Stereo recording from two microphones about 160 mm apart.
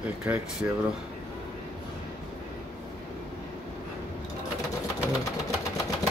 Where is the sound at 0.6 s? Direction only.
15° right (ahead or behind).